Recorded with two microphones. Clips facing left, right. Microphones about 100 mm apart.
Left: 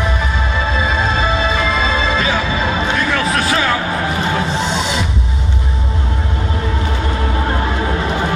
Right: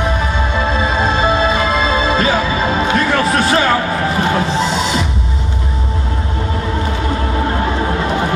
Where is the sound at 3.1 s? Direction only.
35° right (ahead or behind).